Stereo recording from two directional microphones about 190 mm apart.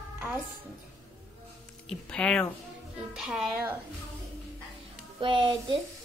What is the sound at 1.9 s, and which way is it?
A woman's voice, 5° left (ahead or behind).